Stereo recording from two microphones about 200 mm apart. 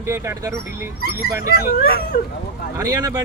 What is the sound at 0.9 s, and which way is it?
Speech, 50° left (ahead or behind).